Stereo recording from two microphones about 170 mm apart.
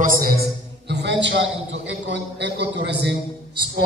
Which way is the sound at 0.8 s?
90° right.